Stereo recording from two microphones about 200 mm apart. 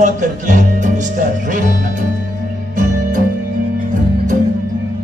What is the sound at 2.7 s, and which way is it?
Music, 40° right (ahead or behind).